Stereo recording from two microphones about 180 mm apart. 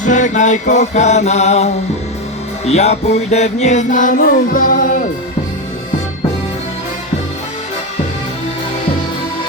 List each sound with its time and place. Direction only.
0.0 s music: 45° left (ahead or behind)